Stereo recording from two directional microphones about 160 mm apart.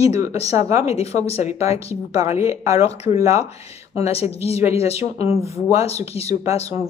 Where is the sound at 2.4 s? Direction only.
20° right (ahead or behind).